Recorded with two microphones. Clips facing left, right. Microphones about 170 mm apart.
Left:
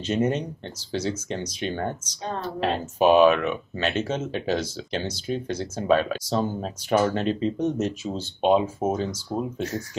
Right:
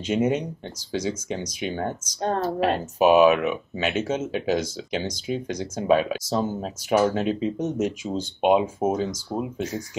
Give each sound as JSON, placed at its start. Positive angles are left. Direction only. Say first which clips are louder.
{"t": 0.0, "sound": "speech", "louder": "right 1 dB", "side_deg": -10}
{"t": 2.2, "sound": "a woman's voice", "louder": "right 6 dB", "side_deg": -55}
{"t": 2.6, "sound": "speech", "louder": "even", "side_deg": -10}